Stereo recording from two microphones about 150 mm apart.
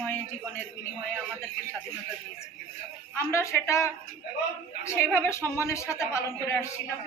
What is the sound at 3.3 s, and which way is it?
A woman's voice, 20° left (ahead or behind).